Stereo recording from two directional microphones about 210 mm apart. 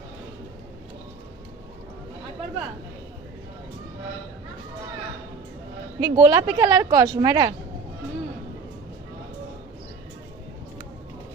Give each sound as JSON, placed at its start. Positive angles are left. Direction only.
{"t": 6.0, "sound": "speech", "side_deg": -15}